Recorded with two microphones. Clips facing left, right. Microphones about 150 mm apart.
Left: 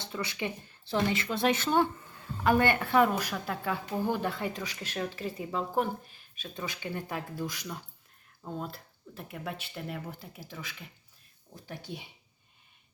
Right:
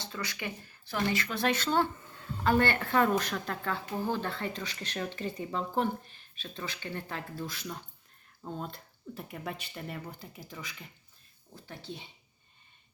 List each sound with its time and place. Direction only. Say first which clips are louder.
0.0 s a woman's voice: left 3 dB; 25° left (ahead or behind); by 10.8 s 5° left (ahead or behind)
11.5 s a woman's voice: left 2 dB; 15° left (ahead or behind)